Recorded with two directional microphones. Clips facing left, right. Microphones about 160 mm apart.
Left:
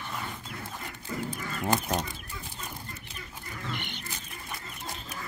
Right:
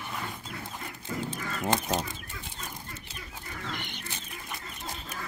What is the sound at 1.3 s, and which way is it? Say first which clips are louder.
Goose: left 1 dB; 25° right (ahead or behind).